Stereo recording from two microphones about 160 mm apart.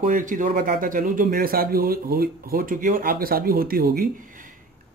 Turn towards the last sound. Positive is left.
turn(degrees=-65)  # may be behind; listen again after turning